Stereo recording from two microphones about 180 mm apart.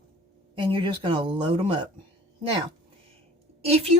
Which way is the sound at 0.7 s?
25° right (ahead or behind).